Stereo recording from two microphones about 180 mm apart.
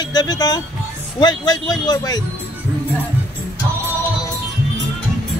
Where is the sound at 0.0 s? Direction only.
25° left (ahead or behind).